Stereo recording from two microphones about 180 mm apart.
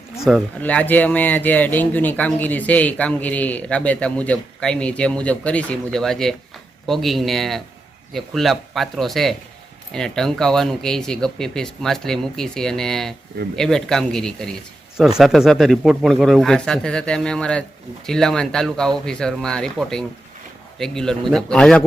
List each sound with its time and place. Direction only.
0.2 s a man's voice: centre (ahead or behind)